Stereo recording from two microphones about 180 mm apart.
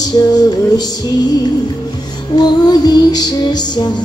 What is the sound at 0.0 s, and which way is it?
Music, 20° left (ahead or behind).